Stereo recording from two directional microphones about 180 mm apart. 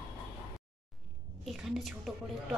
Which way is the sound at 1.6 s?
Centre (ahead or behind).